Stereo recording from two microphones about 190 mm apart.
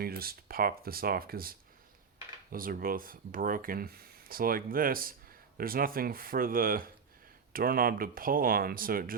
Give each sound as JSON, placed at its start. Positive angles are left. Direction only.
{"t": 0.0, "sound": "speech", "side_deg": -50}